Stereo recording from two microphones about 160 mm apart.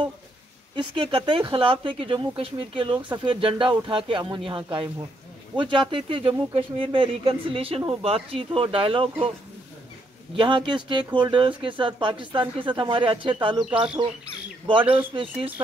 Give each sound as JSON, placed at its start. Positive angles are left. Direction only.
{"t": 0.7, "sound": "speech", "side_deg": -30}
{"t": 10.3, "sound": "speech", "side_deg": -30}
{"t": 14.7, "sound": "speech", "side_deg": -30}
{"t": 15.3, "sound": "speech", "side_deg": -10}